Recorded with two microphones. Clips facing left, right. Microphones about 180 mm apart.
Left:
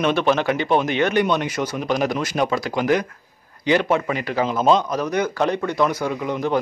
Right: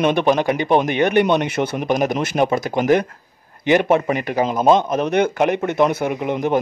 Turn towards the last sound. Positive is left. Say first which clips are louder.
# right 3 dB
turn(degrees=-20)  # may be behind; listen again after turning